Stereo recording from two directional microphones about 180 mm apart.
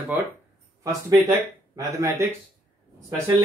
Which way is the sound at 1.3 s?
20° right (ahead or behind).